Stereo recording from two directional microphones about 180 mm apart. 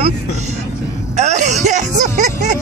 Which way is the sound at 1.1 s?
40° right (ahead or behind).